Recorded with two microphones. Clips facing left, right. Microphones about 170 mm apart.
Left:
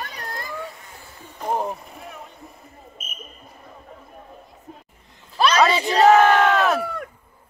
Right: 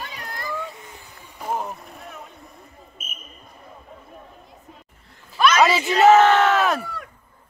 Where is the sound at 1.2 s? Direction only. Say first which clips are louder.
Left 3 dB; 10° right (ahead or behind).